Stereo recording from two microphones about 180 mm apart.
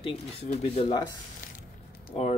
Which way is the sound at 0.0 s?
35° left (ahead or behind).